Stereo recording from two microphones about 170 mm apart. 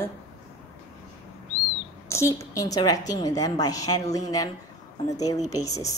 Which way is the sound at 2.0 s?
15° left (ahead or behind).